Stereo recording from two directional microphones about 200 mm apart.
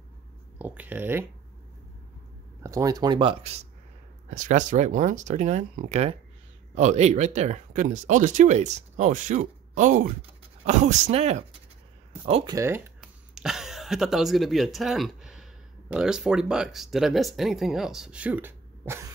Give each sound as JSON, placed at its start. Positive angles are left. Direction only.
{"t": 0.6, "sound": "speech", "side_deg": -10}
{"t": 2.6, "sound": "speech", "side_deg": -15}
{"t": 4.3, "sound": "speech", "side_deg": -40}
{"t": 12.5, "sound": "speech", "side_deg": -10}